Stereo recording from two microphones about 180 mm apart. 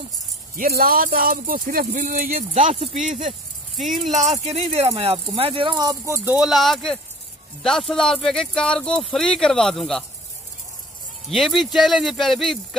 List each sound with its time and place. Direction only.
0.6 s speech: 55° right (ahead or behind); by 3.0 s 35° right (ahead or behind)
3.7 s speech: centre (ahead or behind)
4.0 s speech: 40° right (ahead or behind); by 10.0 s centre (ahead or behind)
11.2 s speech: centre (ahead or behind)